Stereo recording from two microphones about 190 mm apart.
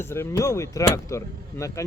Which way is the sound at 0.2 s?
15° left (ahead or behind).